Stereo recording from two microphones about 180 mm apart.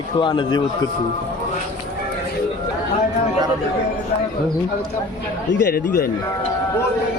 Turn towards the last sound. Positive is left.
turn(degrees=65)  # may be behind; listen again after turning